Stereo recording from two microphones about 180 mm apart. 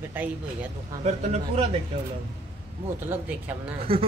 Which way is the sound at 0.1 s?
10° right (ahead or behind).